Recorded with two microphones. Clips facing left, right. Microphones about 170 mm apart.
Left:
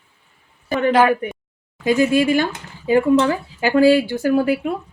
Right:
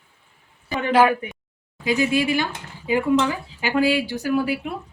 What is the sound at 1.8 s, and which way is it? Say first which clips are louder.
Speech: left 5 dB; 50° left (ahead or behind).